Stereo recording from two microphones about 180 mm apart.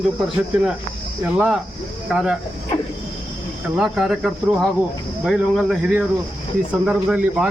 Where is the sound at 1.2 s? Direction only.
5° right (ahead or behind).